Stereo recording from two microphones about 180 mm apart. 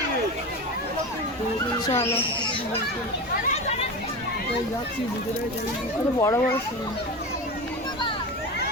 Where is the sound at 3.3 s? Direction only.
40° left (ahead or behind).